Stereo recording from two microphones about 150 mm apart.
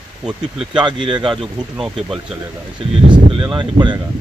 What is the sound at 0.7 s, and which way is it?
Speech, 30° right (ahead or behind).